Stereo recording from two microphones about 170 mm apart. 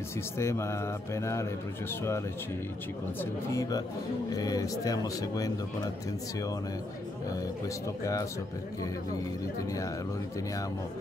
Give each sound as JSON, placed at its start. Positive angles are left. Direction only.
{"t": 0.4, "sound": "speech", "side_deg": 15}
{"t": 3.2, "sound": "speech", "side_deg": 20}
{"t": 7.6, "sound": "speech", "side_deg": 20}